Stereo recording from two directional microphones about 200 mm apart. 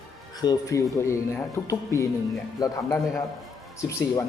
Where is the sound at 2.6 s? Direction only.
15° left (ahead or behind).